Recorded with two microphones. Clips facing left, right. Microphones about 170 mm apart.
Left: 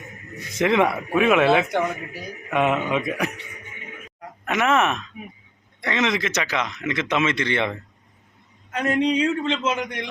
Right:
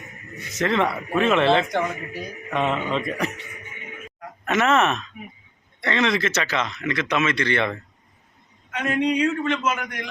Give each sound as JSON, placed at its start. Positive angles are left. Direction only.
{"t": 0.6, "sound": "speech", "side_deg": 10}
{"t": 4.4, "sound": "speech", "side_deg": 10}
{"t": 8.7, "sound": "a man's voice", "side_deg": 35}